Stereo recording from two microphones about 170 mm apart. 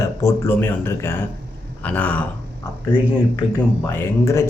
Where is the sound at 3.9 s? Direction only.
15° left (ahead or behind).